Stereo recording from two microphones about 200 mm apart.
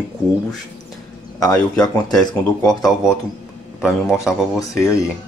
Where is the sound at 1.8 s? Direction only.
20° left (ahead or behind).